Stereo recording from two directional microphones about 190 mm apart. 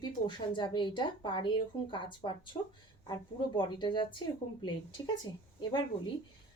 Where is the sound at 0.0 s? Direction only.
25° left (ahead or behind).